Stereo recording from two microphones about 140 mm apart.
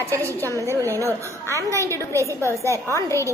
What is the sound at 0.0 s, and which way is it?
Speech, 20° right (ahead or behind).